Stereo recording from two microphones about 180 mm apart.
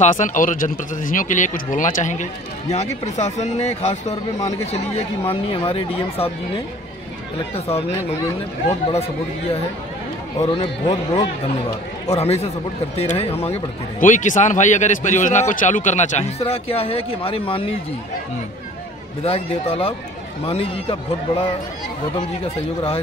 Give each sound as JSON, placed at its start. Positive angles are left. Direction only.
{"t": 0.0, "sound": "speech", "side_deg": 45}
{"t": 13.9, "sound": "speech", "side_deg": 45}
{"t": 19.2, "sound": "speech", "side_deg": 35}